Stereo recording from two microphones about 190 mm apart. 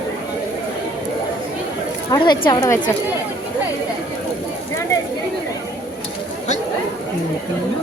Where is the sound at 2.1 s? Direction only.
25° left (ahead or behind).